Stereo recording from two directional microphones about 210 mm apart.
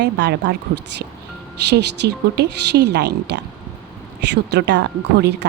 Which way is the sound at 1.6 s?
55° right (ahead or behind).